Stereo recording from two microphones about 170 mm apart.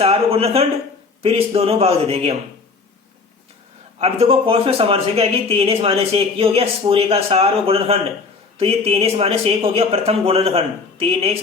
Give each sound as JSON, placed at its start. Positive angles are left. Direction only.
{"t": 0.0, "sound": "a sound", "side_deg": -35}
{"t": 1.2, "sound": "speech", "side_deg": -35}
{"t": 4.0, "sound": "speech", "side_deg": -35}